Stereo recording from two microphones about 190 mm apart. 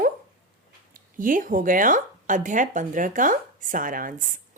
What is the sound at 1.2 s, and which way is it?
Speech, 45° right (ahead or behind).